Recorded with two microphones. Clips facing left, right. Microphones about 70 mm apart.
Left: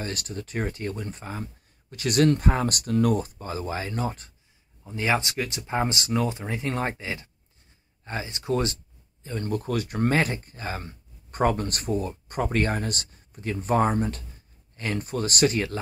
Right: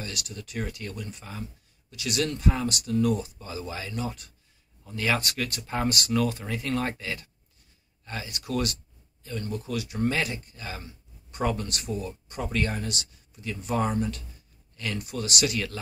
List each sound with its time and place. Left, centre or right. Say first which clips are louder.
0.0 s speech: left 5 dB; left
4.8 s speech: left 2 dB; left
9.5 s speech: left 6 dB; left